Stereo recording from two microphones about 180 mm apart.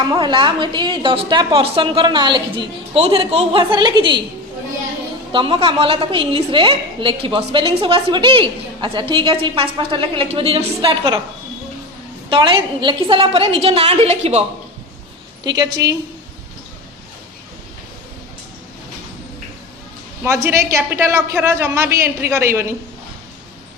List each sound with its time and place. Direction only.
0.1 s a woman's voice: 25° right (ahead or behind)
5.3 s a woman's voice: 30° right (ahead or behind)
12.3 s a woman's voice: 25° right (ahead or behind)
15.4 s a woman's voice: 20° right (ahead or behind)
20.2 s a woman's voice: 15° right (ahead or behind)